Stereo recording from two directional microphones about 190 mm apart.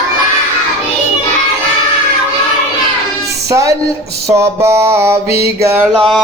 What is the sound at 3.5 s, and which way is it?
Mantra, 15° right (ahead or behind).